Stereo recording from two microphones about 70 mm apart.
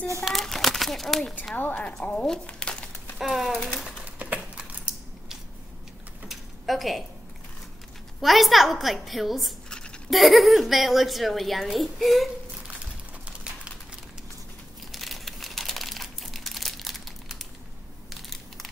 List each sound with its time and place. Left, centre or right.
0.2 s a child's voice: centre
1.5 s speech: left
3.2 s speech: centre
3.5 s speech: centre
3.8 s a sound: centre
6.2 s a sound: centre
8.2 s speech: centre
9.7 s a sound: centre
10.1 s speech: centre
14.9 s crumpling: centre
18.1 s crushing: centre